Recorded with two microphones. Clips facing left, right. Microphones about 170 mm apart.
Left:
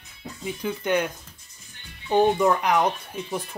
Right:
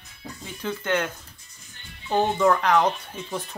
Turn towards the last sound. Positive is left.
turn(degrees=10)  # may be behind; listen again after turning